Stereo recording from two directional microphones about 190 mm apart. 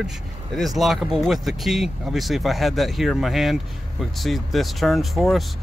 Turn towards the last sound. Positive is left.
turn(degrees=0)  # may be behind; listen again after turning